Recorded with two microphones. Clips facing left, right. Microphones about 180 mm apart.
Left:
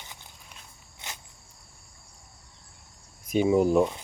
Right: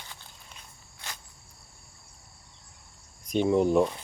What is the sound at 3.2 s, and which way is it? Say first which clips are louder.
Speech: left 2 dB; 5° left (ahead or behind).